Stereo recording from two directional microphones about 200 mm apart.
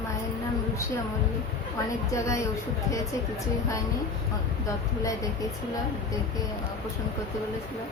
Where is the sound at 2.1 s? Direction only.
15° left (ahead or behind).